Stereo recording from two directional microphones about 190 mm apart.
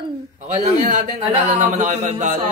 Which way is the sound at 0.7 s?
40° right (ahead or behind).